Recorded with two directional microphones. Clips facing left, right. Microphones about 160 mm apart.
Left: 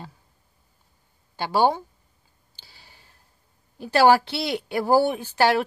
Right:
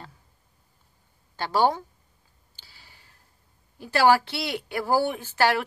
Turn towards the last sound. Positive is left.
turn(degrees=20)  # may be behind; listen again after turning